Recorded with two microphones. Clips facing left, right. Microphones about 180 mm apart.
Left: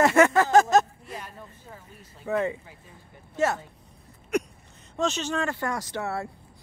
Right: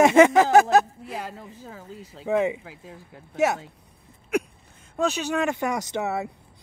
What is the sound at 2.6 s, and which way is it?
Speech, 90° right.